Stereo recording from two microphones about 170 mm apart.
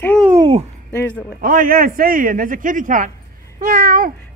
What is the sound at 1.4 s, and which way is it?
A man's voice, 55° right (ahead or behind).